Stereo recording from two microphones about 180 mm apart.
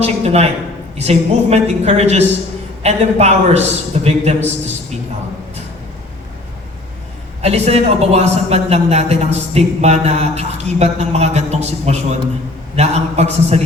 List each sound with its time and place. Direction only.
0.0 s a man's voice: 35° right (ahead or behind)
7.4 s a man's voice: 35° right (ahead or behind)